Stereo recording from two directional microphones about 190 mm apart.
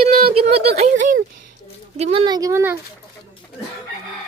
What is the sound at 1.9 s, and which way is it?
Speech, 30° right (ahead or behind).